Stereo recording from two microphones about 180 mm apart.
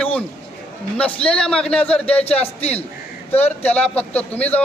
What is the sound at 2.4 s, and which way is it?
Speech, 35° left (ahead or behind).